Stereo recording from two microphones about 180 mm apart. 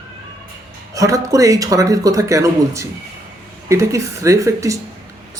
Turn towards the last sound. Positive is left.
turn(degrees=-15)  # may be behind; listen again after turning